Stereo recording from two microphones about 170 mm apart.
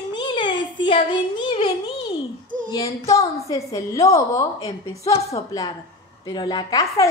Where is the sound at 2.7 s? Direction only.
20° left (ahead or behind).